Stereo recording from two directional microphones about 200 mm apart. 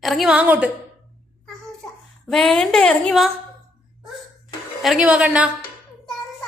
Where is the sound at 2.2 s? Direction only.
5° left (ahead or behind).